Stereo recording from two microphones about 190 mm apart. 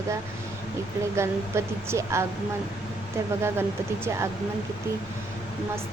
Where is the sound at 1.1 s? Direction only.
15° right (ahead or behind).